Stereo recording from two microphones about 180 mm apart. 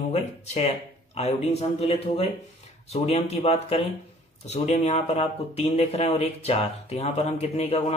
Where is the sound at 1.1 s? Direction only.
35° left (ahead or behind).